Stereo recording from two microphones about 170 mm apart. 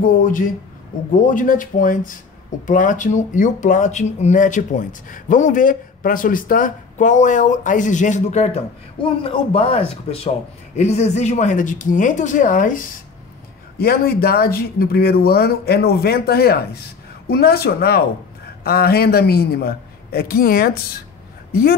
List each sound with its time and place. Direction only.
0.0 s speech: 55° left (ahead or behind)
9.2 s speech: 30° left (ahead or behind); by 12.8 s 50° left (ahead or behind)
13.7 s speech: 65° left (ahead or behind)